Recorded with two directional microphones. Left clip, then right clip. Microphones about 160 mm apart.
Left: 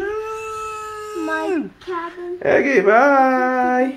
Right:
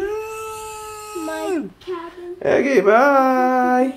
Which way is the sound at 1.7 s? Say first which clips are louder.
Left 3 dB; 10° right (ahead or behind).